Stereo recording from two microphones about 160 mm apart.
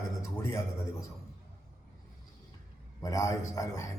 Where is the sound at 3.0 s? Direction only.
20° left (ahead or behind).